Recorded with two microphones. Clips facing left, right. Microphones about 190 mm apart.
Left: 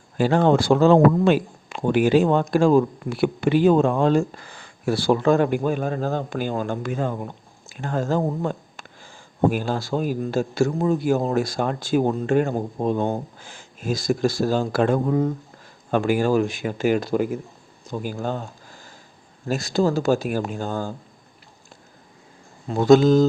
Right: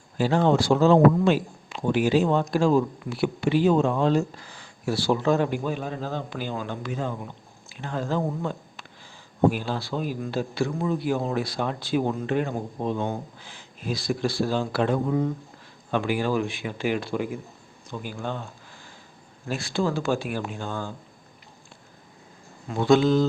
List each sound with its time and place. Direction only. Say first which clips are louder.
0.2 s speech: left 3 dB; 55° left (ahead or behind)
22.7 s speech: left 5 dB; 40° left (ahead or behind)